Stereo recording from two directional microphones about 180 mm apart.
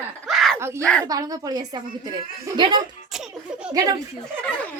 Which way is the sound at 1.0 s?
20° right (ahead or behind).